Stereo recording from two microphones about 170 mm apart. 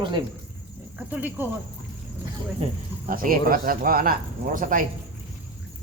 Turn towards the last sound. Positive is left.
turn(degrees=-50)  # may be behind; listen again after turning